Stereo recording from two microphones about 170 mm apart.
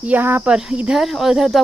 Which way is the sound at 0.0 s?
10° right (ahead or behind).